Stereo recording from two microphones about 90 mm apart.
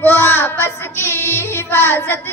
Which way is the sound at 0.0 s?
25° left (ahead or behind).